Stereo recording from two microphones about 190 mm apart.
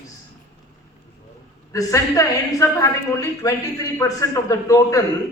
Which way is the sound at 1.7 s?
15° left (ahead or behind).